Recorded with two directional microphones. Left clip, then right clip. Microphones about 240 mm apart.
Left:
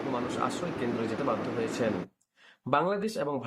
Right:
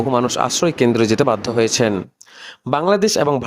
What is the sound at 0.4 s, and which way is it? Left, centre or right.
Speech, right.